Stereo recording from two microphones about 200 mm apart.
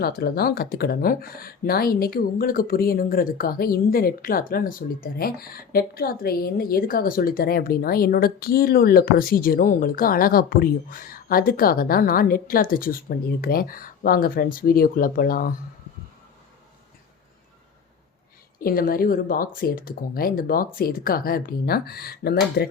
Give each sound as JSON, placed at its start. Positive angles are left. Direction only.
{"t": 0.0, "sound": "speech", "side_deg": 50}
{"t": 18.6, "sound": "speech", "side_deg": 45}